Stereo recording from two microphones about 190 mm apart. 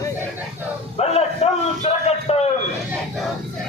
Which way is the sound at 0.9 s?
35° left (ahead or behind).